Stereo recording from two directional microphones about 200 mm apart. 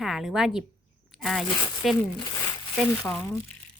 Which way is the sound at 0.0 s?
Centre (ahead or behind).